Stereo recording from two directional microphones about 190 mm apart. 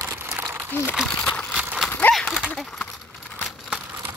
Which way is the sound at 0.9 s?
Centre (ahead or behind).